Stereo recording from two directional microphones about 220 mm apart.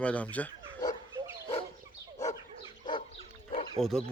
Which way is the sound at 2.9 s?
20° left (ahead or behind).